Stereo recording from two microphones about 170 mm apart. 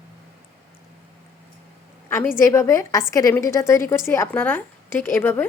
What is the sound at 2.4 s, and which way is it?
A woman's voice, 20° left (ahead or behind).